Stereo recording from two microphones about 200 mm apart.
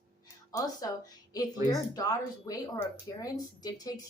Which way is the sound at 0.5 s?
20° left (ahead or behind).